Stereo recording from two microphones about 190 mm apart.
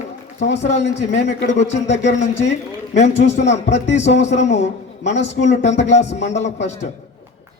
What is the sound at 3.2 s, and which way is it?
A man's voice, 65° left (ahead or behind).